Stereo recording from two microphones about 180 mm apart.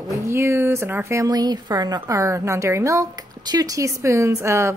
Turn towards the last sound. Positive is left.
turn(degrees=-15)  # may be behind; listen again after turning